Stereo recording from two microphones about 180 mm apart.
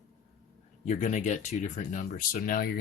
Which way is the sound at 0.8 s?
40° left (ahead or behind).